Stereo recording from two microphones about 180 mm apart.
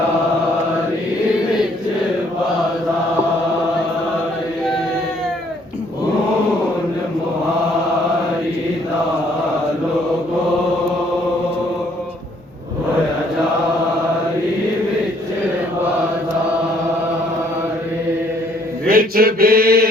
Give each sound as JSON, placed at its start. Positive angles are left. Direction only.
{"t": 18.9, "sound": "mantra", "side_deg": -55}